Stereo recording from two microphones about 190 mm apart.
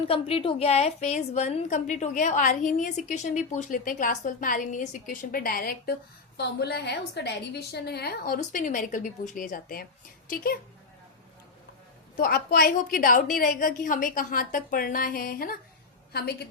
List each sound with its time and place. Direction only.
0.1 s a woman's voice: 30° left (ahead or behind); by 10.6 s 50° left (ahead or behind)
12.1 s a woman's voice: 50° left (ahead or behind)